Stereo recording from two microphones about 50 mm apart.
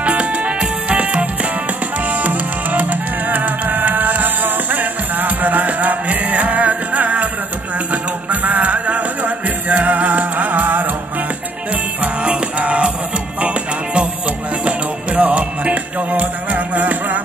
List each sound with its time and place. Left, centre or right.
0.0 s music: right
11.7 s music: right